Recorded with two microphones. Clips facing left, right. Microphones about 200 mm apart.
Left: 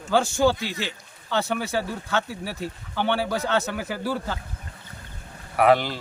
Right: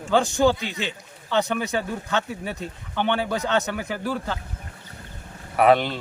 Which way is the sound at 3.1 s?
10° left (ahead or behind).